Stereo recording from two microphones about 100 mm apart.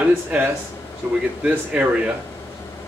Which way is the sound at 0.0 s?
15° right (ahead or behind).